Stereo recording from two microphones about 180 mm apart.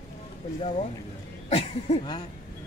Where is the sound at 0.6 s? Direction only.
40° left (ahead or behind).